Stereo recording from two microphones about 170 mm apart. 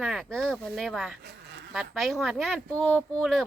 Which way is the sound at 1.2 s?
80° right.